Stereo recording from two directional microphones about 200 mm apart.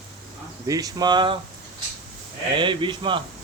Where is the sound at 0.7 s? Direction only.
20° right (ahead or behind).